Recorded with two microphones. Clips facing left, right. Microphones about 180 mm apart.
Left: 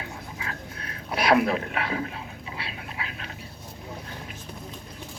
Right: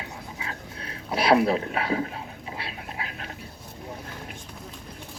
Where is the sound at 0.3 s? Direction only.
25° right (ahead or behind); by 3.2 s 45° right (ahead or behind).